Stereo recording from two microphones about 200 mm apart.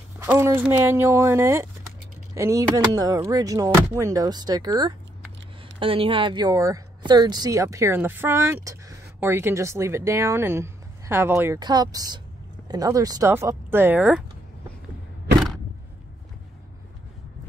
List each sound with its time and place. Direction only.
0.2 s speech: 10° right (ahead or behind)